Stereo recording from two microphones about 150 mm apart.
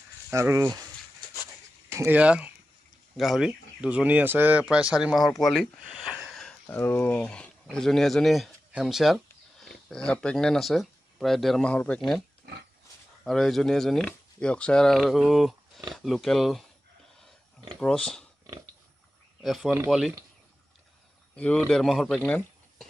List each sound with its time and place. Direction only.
0.3 s speech: 20° right (ahead or behind)
1.9 s speech: 15° right (ahead or behind); by 12.0 s 10° left (ahead or behind)
13.2 s speech: 5° left (ahead or behind)
17.7 s speech: 5° left (ahead or behind)
19.4 s speech: centre (ahead or behind)
21.4 s speech: 5° left (ahead or behind)